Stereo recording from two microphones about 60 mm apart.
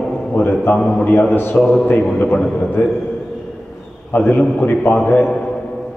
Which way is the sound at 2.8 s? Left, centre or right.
Left.